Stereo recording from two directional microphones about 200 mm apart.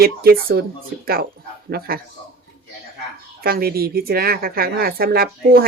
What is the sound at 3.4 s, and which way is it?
A woman's voice, 50° right (ahead or behind).